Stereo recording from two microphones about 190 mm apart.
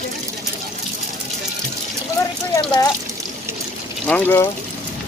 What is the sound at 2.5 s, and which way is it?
Water, 20° left (ahead or behind).